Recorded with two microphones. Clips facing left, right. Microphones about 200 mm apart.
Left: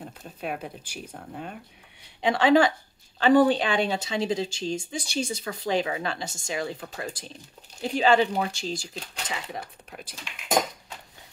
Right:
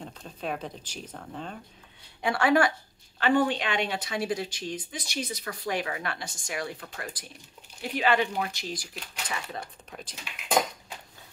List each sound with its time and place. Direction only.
0.0 s speech: 5° left (ahead or behind)
2.2 s speech: 20° left (ahead or behind)
3.2 s speech: 35° left (ahead or behind)
9.8 s speech: 5° left (ahead or behind)